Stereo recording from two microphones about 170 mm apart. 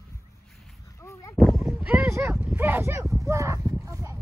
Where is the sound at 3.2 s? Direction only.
20° right (ahead or behind).